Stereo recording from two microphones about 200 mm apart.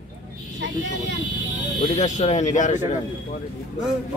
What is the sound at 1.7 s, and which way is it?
Speech, 35° left (ahead or behind).